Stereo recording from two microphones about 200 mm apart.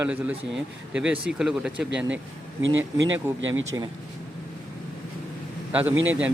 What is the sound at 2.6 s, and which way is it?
Speech, 70° right (ahead or behind).